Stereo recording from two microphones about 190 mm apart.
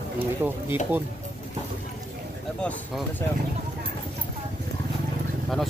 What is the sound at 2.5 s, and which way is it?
Speech, 5° left (ahead or behind).